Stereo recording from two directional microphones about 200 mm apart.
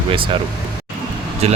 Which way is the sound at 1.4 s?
30° right (ahead or behind).